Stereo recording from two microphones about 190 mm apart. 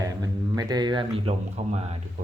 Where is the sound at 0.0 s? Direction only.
20° right (ahead or behind).